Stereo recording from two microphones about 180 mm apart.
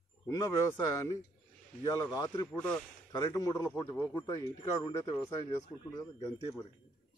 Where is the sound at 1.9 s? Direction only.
20° left (ahead or behind).